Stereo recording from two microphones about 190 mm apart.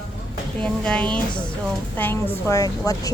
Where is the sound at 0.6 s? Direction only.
5° left (ahead or behind).